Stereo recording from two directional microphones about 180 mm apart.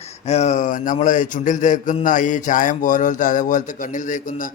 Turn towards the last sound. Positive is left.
turn(degrees=45)  # may be behind; listen again after turning